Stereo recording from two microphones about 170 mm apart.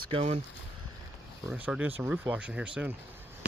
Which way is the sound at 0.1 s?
35° right (ahead or behind).